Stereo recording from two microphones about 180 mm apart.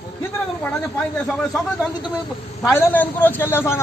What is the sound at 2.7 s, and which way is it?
A man's voice, 10° left (ahead or behind).